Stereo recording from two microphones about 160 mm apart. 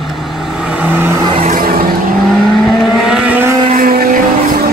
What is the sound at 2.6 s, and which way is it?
Vehicle, centre (ahead or behind).